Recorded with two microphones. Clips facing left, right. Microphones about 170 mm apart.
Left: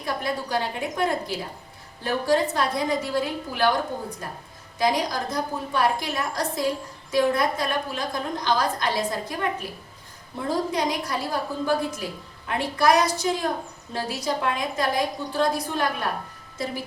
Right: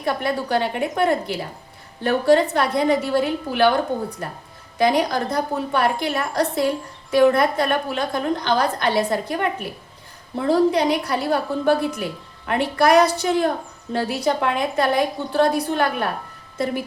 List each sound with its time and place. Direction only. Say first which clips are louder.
0.0 s a woman's voice: right 5 dB; 65° right (ahead or behind)
4.8 s a woman's voice: right 5 dB; 60° right (ahead or behind)
10.5 s a woman's voice: right 8 dB; 65° right (ahead or behind)